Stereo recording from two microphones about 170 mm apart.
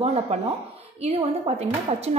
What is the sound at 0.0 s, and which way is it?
A woman's voice, 40° right (ahead or behind).